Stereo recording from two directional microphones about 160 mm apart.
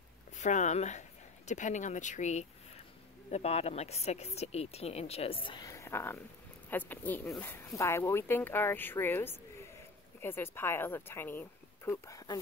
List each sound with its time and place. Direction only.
0.4 s speech: 50° left (ahead or behind); by 12.4 s 20° left (ahead or behind)